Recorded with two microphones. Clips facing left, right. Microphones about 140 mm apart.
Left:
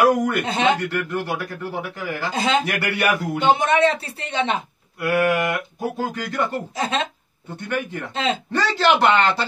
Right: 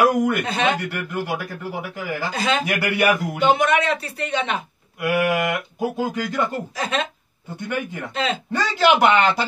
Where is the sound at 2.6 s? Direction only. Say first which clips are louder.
Right 2 dB; 10° right (ahead or behind).